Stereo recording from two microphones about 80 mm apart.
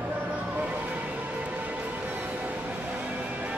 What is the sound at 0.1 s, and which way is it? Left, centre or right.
Music, centre.